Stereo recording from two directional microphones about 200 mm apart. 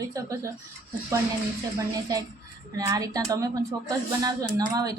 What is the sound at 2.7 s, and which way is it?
A woman's voice, 15° right (ahead or behind).